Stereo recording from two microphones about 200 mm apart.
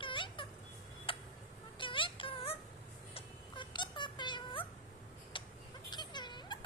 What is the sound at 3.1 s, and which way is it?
Cat, 25° left (ahead or behind).